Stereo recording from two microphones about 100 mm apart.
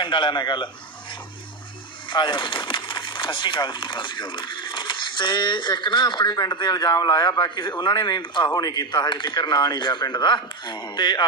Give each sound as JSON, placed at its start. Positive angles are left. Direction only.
{"t": 0.0, "sound": "a man's voice", "side_deg": 50}
{"t": 2.0, "sound": "a man's voice", "side_deg": 50}